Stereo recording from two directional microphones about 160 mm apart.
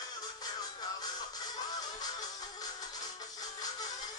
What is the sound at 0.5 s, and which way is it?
Music, 25° left (ahead or behind).